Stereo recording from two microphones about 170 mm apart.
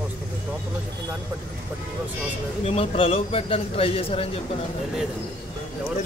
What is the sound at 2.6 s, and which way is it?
Speech, 35° left (ahead or behind).